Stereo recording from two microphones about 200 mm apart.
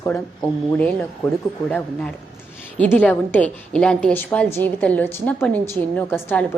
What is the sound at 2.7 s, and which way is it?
A woman's voice, 5° left (ahead or behind).